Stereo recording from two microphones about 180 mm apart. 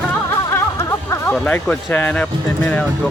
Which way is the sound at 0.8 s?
15° left (ahead or behind).